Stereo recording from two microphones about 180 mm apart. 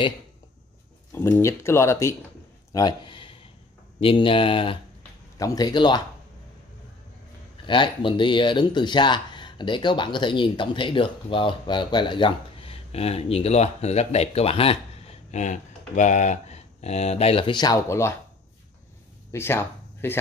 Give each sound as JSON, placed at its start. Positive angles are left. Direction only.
{"t": 1.1, "sound": "speech", "side_deg": 15}
{"t": 2.7, "sound": "a sound", "side_deg": 25}
{"t": 4.0, "sound": "speech", "side_deg": 30}
{"t": 7.6, "sound": "speech", "side_deg": 25}
{"t": 19.3, "sound": "speech", "side_deg": 15}